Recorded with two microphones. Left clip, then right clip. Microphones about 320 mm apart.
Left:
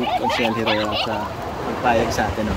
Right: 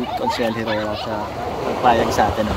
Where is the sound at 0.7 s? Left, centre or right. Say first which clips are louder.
Left 2 dB; left.